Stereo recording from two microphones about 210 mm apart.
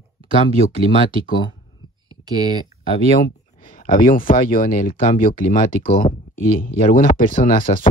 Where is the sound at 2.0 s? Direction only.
20° right (ahead or behind).